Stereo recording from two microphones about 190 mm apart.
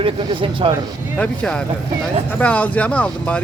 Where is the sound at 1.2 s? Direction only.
5° left (ahead or behind).